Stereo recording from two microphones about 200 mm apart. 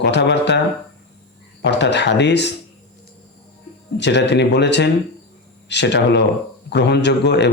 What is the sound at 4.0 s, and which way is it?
Speech, 60° left (ahead or behind).